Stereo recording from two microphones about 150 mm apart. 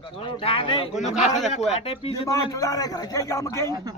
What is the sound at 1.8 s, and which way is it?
Speech, 40° left (ahead or behind).